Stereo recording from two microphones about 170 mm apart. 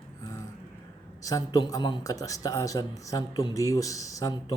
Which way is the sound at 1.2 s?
20° left (ahead or behind).